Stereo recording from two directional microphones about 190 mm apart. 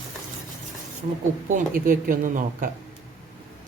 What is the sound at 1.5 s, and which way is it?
Speech, 45° right (ahead or behind).